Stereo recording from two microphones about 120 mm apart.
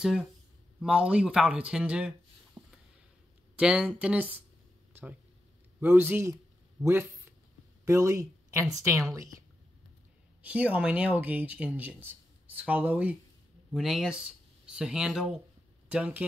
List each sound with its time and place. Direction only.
0.0 s speech: 5° right (ahead or behind)
2.6 s a sound: 35° right (ahead or behind)
3.5 s speech: 10° right (ahead or behind)
5.8 s speech: 15° right (ahead or behind)
6.8 s a sound: 25° right (ahead or behind)
7.8 s a woman's voice: 25° right (ahead or behind)
10.4 s speech: 10° right (ahead or behind)
13.7 s speech: 5° right (ahead or behind)